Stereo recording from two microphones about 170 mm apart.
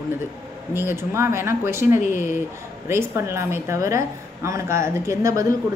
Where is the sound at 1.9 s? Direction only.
50° left (ahead or behind).